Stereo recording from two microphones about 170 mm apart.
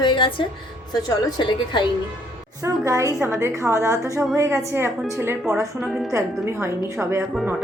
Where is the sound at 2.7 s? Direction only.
20° right (ahead or behind).